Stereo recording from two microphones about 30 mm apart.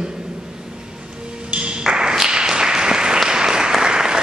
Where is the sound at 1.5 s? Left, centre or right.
Right.